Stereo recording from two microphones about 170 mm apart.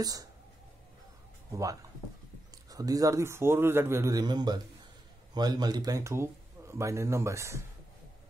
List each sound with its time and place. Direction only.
0.0 s speech: 20° right (ahead or behind)
1.5 s a man's voice: 20° right (ahead or behind)